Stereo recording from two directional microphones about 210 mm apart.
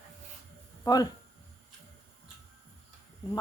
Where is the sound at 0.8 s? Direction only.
20° left (ahead or behind).